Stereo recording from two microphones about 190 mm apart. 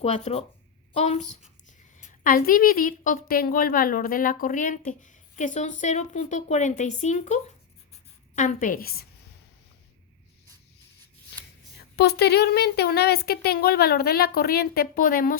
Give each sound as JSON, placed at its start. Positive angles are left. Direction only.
{"t": 0.0, "sound": "speech", "side_deg": 35}
{"t": 2.2, "sound": "a woman's voice", "side_deg": 50}
{"t": 11.9, "sound": "speech", "side_deg": 60}